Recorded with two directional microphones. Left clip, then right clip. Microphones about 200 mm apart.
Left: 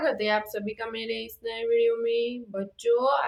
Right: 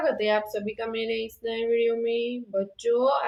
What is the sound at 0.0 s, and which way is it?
A woman's voice, 20° left (ahead or behind).